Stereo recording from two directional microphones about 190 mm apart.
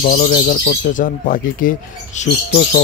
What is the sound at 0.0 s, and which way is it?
Speech, 50° left (ahead or behind).